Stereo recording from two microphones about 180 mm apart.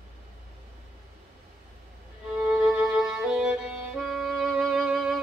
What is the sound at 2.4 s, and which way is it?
Music, centre (ahead or behind).